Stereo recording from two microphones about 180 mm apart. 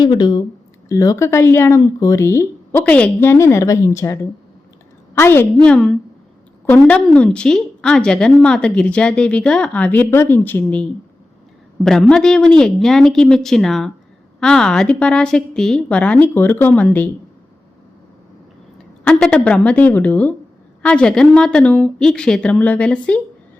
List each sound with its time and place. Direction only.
0.0 s a woman's voice: 25° left (ahead or behind); by 17.1 s 10° left (ahead or behind)
19.0 s a woman's voice: 5° left (ahead or behind)